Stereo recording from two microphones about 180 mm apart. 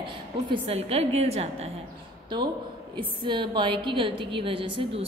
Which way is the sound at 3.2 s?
25° right (ahead or behind).